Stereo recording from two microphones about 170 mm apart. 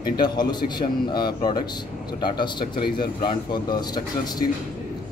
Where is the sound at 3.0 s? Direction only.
25° left (ahead or behind).